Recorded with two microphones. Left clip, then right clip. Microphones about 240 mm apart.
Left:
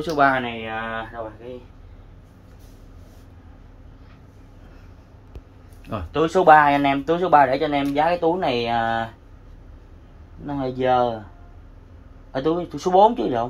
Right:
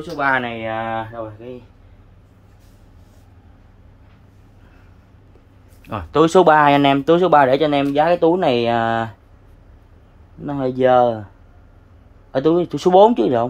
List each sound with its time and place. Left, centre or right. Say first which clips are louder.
0.3 s speech: right 4 dB; right
6.1 s speech: right 2 dB; right
10.4 s speech: right 6 dB; right
12.3 s speech: right 6 dB; right